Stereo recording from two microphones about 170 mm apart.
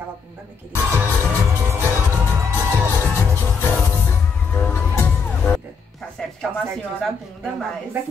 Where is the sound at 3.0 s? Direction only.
10° left (ahead or behind).